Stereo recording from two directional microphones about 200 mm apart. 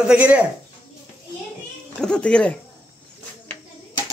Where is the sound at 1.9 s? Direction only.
5° left (ahead or behind).